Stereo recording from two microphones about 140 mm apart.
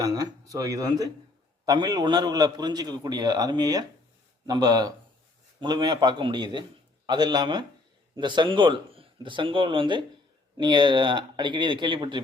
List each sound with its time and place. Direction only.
0.0 s a man's voice: 25° right (ahead or behind)